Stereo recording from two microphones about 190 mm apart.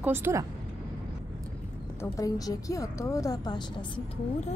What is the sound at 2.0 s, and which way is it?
Speech, 15° left (ahead or behind).